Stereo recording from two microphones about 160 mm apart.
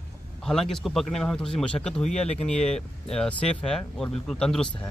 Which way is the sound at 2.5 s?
5° left (ahead or behind).